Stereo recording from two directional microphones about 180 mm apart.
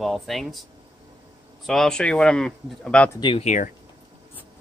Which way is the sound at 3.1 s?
25° left (ahead or behind).